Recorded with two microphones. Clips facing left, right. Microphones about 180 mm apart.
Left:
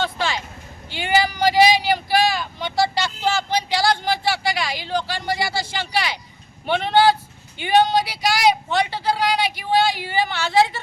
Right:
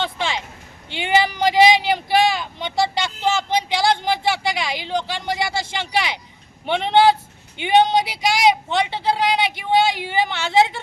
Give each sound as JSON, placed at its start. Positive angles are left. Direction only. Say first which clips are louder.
{"t": 0.0, "sound": "a sound", "louder": "left 1 dB", "side_deg": -20}
{"t": 0.9, "sound": "vehicle", "louder": "right 1 dB", "side_deg": -20}
{"t": 6.7, "sound": "speech", "louder": "right 1 dB", "side_deg": -20}